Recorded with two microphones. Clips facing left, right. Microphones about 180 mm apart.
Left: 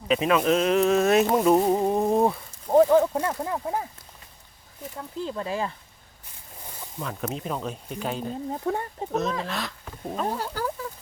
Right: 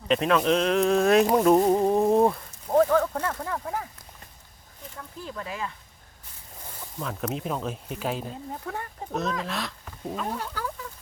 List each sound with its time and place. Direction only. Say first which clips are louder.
0.1 s speech: left 1 dB; 5° left (ahead or behind)
1.4 s a sound: right 1 dB; centre (ahead or behind)
2.7 s speech: left 3 dB; 20° left (ahead or behind)
4.9 s speech: left 6 dB; 25° left (ahead or behind)
7.0 s speech: right 1 dB; centre (ahead or behind)
8.6 s speech: left 8 dB; 25° left (ahead or behind)
9.4 s speech: left 1 dB; centre (ahead or behind)
10.2 s speech: left 5 dB; 35° left (ahead or behind)